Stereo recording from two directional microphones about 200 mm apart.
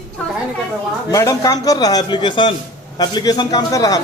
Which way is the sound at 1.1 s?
15° left (ahead or behind).